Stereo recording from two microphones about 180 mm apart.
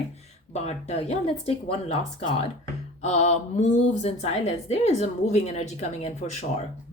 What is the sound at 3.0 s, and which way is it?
A woman's voice, 40° left (ahead or behind).